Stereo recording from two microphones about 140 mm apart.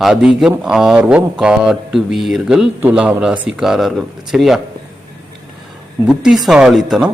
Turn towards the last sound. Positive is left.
turn(degrees=-5)  # may be behind; listen again after turning